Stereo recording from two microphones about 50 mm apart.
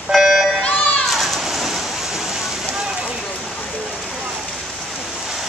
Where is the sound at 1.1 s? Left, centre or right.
Centre.